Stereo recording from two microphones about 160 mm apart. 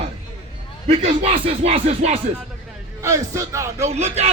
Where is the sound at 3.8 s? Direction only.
45° right (ahead or behind).